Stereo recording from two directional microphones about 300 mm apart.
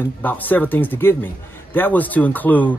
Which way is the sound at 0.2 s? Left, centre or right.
Centre.